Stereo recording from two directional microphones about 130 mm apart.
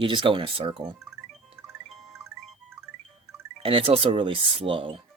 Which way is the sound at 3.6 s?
45° right (ahead or behind).